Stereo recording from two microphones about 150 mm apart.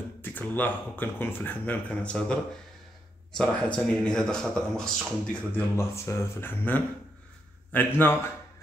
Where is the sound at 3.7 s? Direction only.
5° left (ahead or behind).